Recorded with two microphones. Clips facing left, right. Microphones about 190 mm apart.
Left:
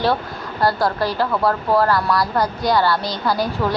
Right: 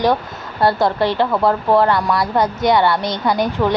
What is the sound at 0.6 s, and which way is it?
Speech, 25° right (ahead or behind).